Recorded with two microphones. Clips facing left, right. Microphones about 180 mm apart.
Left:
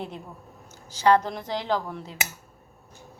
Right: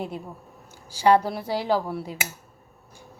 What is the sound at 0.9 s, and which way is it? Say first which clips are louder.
Speech: right 1 dB; 10° right (ahead or behind).